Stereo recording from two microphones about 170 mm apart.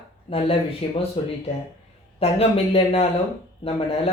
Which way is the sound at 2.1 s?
35° left (ahead or behind).